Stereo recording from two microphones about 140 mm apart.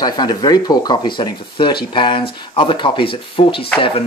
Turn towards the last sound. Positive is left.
turn(degrees=40)  # may be behind; listen again after turning